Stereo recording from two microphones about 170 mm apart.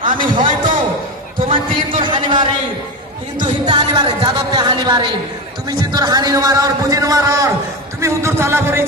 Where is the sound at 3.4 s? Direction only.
25° right (ahead or behind).